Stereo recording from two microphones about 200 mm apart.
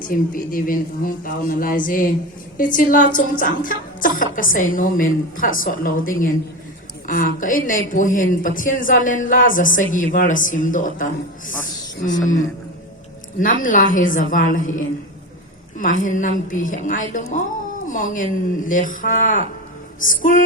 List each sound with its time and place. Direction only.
0.1 s a woman's voice: 45° left (ahead or behind)
3.2 s music: 40° left (ahead or behind)
4.5 s a woman's voice: 40° left (ahead or behind)
13.4 s a man's voice: 40° left (ahead or behind)